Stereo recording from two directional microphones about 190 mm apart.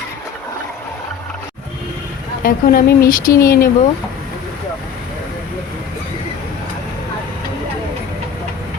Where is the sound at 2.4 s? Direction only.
50° left (ahead or behind).